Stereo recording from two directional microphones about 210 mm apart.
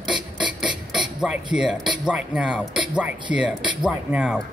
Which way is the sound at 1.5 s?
5° right (ahead or behind).